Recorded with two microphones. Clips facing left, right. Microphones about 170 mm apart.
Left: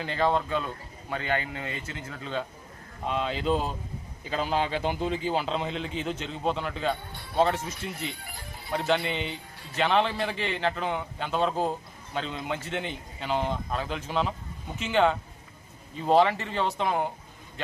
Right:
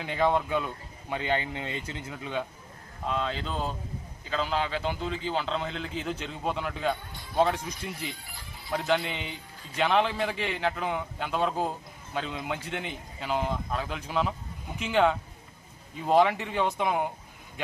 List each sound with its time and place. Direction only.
0.0 s speech: 10° right (ahead or behind)
3.1 s a man's voice: 5° left (ahead or behind)